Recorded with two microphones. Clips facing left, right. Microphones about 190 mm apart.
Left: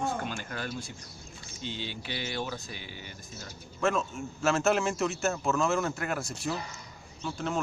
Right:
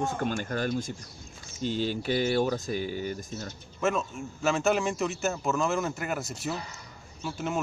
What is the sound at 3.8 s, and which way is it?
A man's voice, centre (ahead or behind).